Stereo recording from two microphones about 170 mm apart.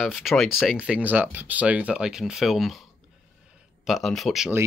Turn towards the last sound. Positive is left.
turn(degrees=0)  # may be behind; listen again after turning